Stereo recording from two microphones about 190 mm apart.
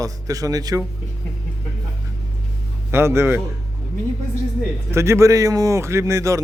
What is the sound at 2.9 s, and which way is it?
Speech, 15° right (ahead or behind).